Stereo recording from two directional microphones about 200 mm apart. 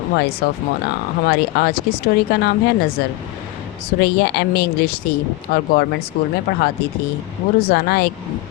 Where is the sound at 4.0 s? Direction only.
55° left (ahead or behind).